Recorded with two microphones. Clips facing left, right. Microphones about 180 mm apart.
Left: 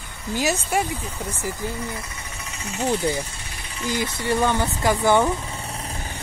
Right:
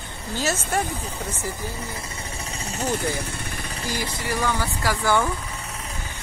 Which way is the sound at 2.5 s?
35° right (ahead or behind).